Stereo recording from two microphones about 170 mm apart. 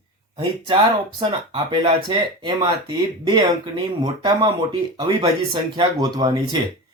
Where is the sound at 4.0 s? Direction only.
25° right (ahead or behind).